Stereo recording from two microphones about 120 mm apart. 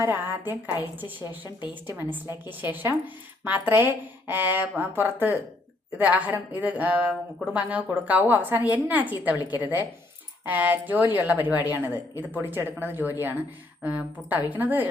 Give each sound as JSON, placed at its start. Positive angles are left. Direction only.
{"t": 0.0, "sound": "a woman's voice", "side_deg": -15}
{"t": 1.5, "sound": "a woman's voice", "side_deg": 35}
{"t": 2.0, "sound": "a woman's voice", "side_deg": -15}
{"t": 9.3, "sound": "a woman's voice", "side_deg": 35}
{"t": 9.6, "sound": "a woman's voice", "side_deg": -15}